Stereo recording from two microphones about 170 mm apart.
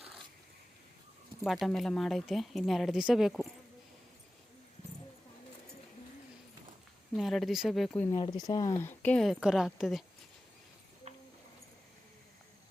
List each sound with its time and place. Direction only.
1.5 s speech: centre (ahead or behind)
7.1 s speech: centre (ahead or behind)
8.1 s speech: 25° left (ahead or behind); by 10.0 s centre (ahead or behind)
11.1 s a sound: 40° right (ahead or behind)